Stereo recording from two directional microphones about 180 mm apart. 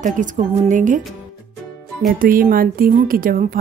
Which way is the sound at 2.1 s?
50° right (ahead or behind).